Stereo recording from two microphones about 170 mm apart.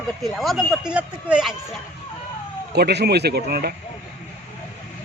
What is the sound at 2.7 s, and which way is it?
Speech, 75° right (ahead or behind).